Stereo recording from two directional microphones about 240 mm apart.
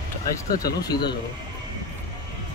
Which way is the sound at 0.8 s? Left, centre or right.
Centre.